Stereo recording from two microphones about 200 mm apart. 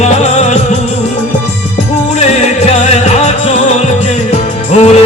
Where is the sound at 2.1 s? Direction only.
35° left (ahead or behind).